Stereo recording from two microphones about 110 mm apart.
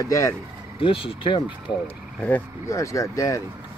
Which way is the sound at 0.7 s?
55° left (ahead or behind).